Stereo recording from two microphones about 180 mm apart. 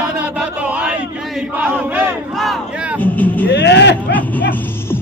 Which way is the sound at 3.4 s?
70° left (ahead or behind).